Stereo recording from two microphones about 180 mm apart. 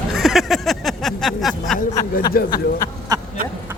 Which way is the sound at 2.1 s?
55° left (ahead or behind).